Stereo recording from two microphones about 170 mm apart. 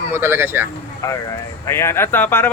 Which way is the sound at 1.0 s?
20° left (ahead or behind).